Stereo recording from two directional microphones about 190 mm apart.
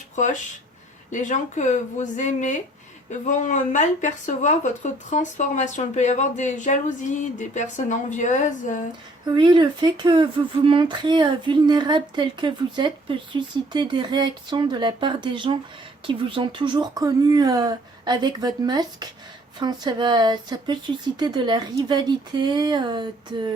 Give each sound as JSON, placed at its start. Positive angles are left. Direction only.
{"t": 1.1, "sound": "speech", "side_deg": 40}
{"t": 9.2, "sound": "speech", "side_deg": -25}